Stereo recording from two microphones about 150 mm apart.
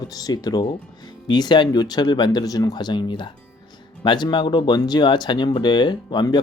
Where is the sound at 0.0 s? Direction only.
25° left (ahead or behind).